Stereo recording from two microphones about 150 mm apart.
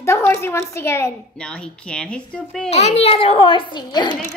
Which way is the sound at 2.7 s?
45° left (ahead or behind).